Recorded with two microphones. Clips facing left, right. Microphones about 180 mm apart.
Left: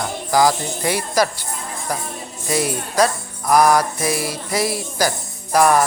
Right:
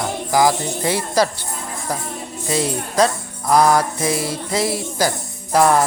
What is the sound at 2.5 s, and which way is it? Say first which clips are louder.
Speech: even; 25° right (ahead or behind).